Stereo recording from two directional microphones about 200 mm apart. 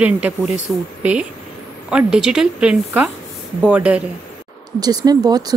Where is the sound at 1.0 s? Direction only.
5° right (ahead or behind).